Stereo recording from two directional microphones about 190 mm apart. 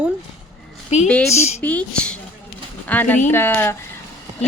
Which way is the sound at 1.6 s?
5° left (ahead or behind).